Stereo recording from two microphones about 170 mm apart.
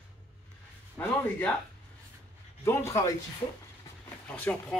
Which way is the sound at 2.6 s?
15° left (ahead or behind).